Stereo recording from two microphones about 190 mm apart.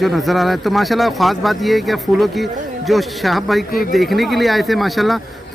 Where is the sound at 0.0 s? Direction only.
Centre (ahead or behind).